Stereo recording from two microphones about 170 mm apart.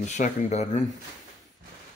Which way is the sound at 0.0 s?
45° left (ahead or behind).